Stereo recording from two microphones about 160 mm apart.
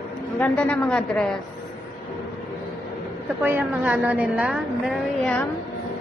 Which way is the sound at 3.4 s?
15° right (ahead or behind).